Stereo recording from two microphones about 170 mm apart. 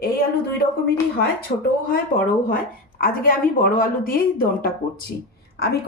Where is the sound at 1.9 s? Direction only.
55° left (ahead or behind).